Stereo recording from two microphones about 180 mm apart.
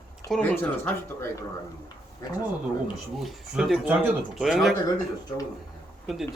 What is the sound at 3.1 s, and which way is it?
Speech, centre (ahead or behind).